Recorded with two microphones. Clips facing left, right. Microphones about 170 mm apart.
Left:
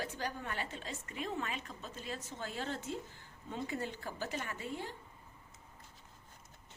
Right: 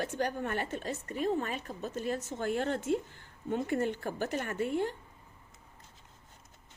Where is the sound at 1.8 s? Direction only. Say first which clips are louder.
Right 10 dB; 50° right (ahead or behind).